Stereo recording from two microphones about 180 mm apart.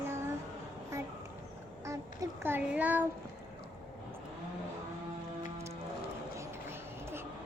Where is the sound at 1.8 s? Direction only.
15° right (ahead or behind).